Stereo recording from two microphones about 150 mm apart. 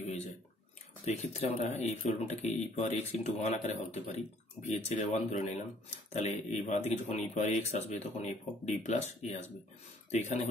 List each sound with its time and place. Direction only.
1.0 s speech: 50° left (ahead or behind)